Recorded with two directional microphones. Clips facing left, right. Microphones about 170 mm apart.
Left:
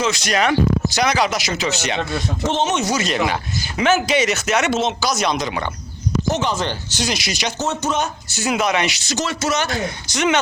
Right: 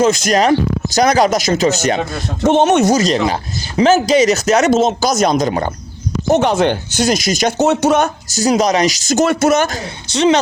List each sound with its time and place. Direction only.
0.0 s speech: 45° right (ahead or behind)
2.5 s speech: 60° right (ahead or behind)
2.9 s speech: 35° right (ahead or behind)
6.3 s speech: 60° right (ahead or behind)
7.6 s speech: 65° right (ahead or behind)
8.3 s speech: 40° right (ahead or behind)